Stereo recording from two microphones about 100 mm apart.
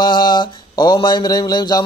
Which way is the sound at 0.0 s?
50° left (ahead or behind).